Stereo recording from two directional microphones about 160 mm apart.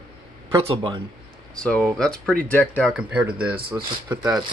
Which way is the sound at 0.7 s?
35° right (ahead or behind).